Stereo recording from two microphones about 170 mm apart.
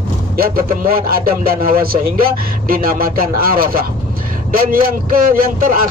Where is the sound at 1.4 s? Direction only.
60° right (ahead or behind).